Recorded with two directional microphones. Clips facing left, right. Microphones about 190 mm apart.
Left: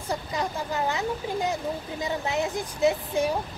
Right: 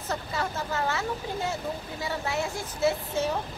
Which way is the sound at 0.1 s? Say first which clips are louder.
Left 2 dB; 15° left (ahead or behind).